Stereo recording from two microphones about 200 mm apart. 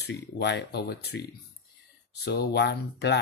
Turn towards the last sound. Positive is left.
turn(degrees=55)  # may be behind; listen again after turning